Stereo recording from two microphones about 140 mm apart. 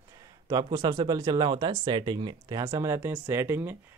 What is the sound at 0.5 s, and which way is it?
Speech, 30° right (ahead or behind).